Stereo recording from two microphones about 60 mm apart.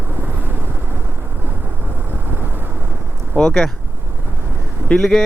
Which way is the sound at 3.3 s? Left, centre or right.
Centre.